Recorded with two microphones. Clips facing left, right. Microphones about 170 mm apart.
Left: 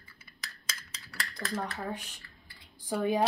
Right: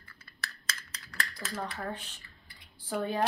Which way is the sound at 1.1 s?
10° left (ahead or behind).